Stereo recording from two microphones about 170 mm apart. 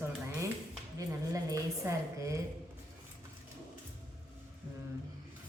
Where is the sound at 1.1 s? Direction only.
20° right (ahead or behind).